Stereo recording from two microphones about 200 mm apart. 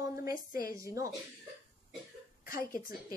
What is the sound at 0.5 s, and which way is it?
Speech, 45° left (ahead or behind).